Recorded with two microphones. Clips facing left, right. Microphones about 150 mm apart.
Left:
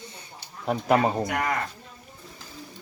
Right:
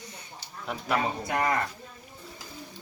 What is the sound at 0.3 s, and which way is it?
Speech, 45° left (ahead or behind).